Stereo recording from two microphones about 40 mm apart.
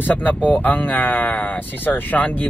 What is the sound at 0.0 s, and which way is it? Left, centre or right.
Speech, left.